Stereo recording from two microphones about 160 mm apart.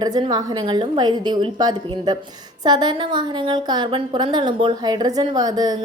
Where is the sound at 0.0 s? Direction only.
25° right (ahead or behind).